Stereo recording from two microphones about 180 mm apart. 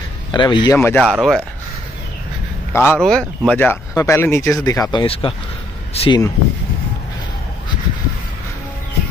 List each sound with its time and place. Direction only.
0.3 s speech: 25° left (ahead or behind)
0.7 s speech: 5° left (ahead or behind)
2.7 s speech: 15° left (ahead or behind)
5.0 s speech: 30° left (ahead or behind)